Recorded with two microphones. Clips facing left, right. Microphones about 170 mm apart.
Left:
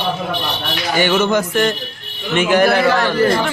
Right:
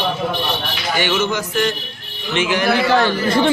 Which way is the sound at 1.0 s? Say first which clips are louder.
Left 5 dB; 50° left (ahead or behind).